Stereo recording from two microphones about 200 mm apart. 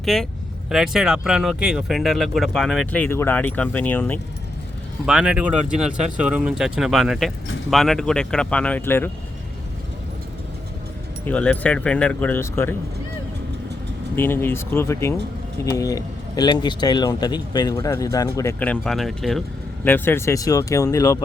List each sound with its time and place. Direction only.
0.0 s speech: centre (ahead or behind)
5.0 s speech: 5° right (ahead or behind)
11.3 s speech: 5° left (ahead or behind)
14.2 s speech: 10° left (ahead or behind)